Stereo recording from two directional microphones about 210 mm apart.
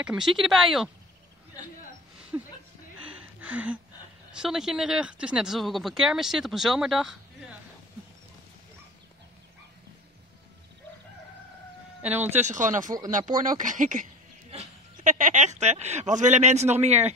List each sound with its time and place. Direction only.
0.0 s speech: 5° right (ahead or behind)
1.6 s a man's voice: 20° left (ahead or behind)
2.3 s speech: 10° right (ahead or behind)
3.3 s a sound: 5° right (ahead or behind)
4.3 s speech: centre (ahead or behind)
12.2 s speech: 35° right (ahead or behind)